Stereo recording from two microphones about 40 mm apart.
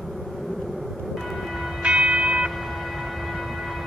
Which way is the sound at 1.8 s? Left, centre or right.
Right.